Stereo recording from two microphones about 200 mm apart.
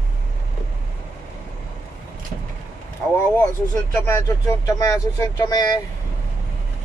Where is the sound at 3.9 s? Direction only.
15° left (ahead or behind).